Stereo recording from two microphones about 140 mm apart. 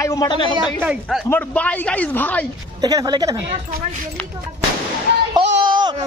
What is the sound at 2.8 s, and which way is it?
Speech, 30° right (ahead or behind).